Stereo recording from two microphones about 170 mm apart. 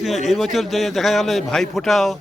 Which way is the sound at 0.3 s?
Centre (ahead or behind).